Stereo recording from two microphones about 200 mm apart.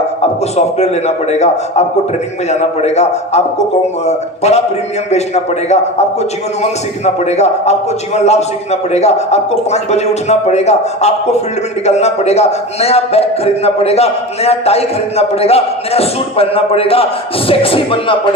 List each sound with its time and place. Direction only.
0.2 s a man's voice: 35° left (ahead or behind)